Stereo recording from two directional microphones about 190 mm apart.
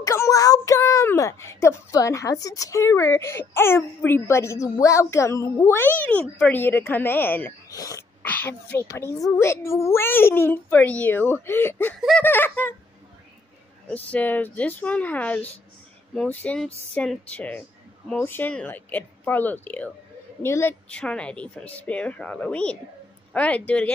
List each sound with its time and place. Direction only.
0.0 s a woman's voice: 15° left (ahead or behind)
7.8 s sneeze: 20° left (ahead or behind)
8.3 s a sound: 10° left (ahead or behind)
8.7 s a woman's voice: 15° left (ahead or behind)
13.8 s a woman's voice: 5° left (ahead or behind)